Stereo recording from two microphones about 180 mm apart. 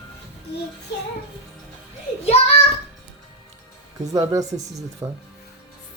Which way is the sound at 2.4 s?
35° left (ahead or behind).